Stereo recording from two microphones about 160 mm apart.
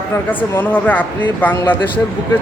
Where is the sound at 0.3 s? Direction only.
10° left (ahead or behind).